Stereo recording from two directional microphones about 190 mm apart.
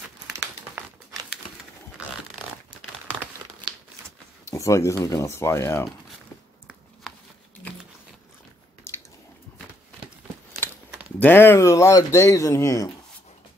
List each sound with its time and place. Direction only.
0.4 s crumpling: 15° right (ahead or behind)
4.5 s speech: 15° left (ahead or behind)
6.7 s a sound: centre (ahead or behind)
11.1 s speech: 10° left (ahead or behind)